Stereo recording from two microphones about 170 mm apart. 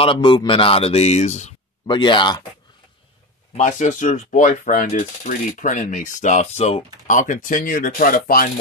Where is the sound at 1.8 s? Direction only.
25° left (ahead or behind).